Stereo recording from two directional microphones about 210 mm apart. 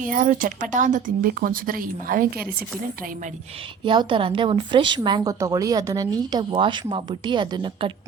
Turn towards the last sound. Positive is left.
turn(degrees=-20)  # may be behind; listen again after turning